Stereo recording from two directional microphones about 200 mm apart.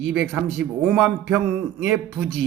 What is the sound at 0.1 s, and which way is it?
Speech, 5° right (ahead or behind).